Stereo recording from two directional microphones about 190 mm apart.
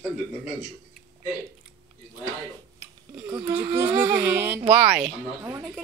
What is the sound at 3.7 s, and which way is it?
Speech, 10° right (ahead or behind).